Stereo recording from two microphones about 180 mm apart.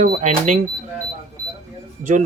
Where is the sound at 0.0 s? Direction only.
40° right (ahead or behind).